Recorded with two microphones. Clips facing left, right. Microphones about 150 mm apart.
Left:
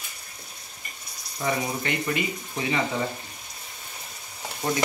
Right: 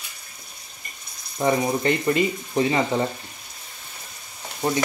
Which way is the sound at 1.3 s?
35° right (ahead or behind).